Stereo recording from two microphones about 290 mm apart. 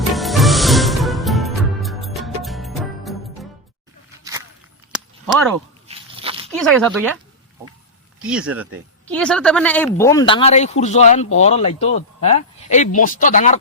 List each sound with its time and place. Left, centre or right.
0.1 s music: centre
5.2 s speech: centre
5.9 s crunch: centre
6.5 s speech: centre
8.3 s speech: centre; by 13.6 s left